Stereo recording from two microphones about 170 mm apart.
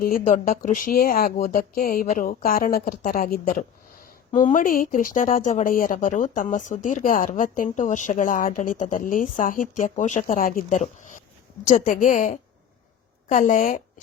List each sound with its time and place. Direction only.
0.0 s speech: 50° left (ahead or behind)